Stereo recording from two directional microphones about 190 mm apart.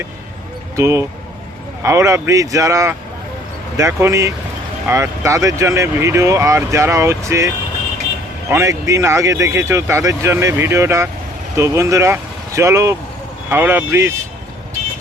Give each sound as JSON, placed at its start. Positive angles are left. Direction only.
{"t": 0.8, "sound": "speech", "side_deg": -15}